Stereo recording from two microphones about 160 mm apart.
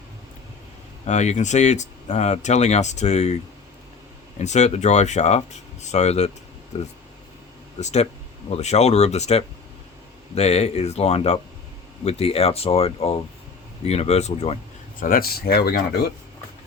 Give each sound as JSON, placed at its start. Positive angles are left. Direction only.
{"t": 1.0, "sound": "speech", "side_deg": 45}
{"t": 4.4, "sound": "speech", "side_deg": 45}
{"t": 7.8, "sound": "speech", "side_deg": 45}
{"t": 15.0, "sound": "speech", "side_deg": 65}